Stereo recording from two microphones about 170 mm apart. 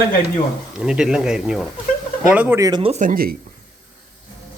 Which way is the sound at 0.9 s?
5° right (ahead or behind).